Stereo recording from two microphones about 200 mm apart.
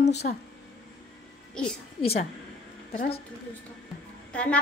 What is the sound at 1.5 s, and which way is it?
Speech, 5° left (ahead or behind).